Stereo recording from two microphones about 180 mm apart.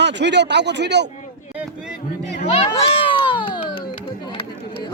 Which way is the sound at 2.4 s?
35° left (ahead or behind).